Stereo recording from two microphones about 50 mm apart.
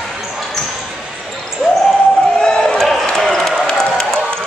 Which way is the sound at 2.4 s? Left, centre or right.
Centre.